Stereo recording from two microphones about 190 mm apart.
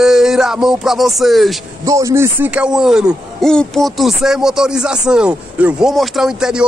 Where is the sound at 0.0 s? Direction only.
5° right (ahead or behind).